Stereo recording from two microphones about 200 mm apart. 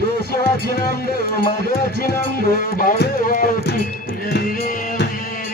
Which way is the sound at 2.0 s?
50° left (ahead or behind).